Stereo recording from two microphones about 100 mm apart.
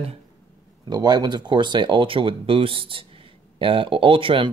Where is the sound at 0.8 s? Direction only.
45° right (ahead or behind).